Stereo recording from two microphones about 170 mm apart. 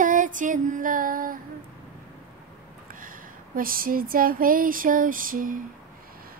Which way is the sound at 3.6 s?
55° right (ahead or behind).